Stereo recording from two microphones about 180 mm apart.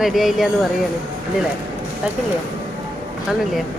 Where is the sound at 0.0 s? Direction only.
Centre (ahead or behind).